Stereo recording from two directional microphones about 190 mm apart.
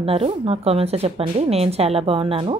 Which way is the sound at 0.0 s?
30° right (ahead or behind).